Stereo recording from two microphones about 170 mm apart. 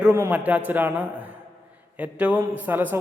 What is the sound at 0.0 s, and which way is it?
A man's voice, 15° right (ahead or behind).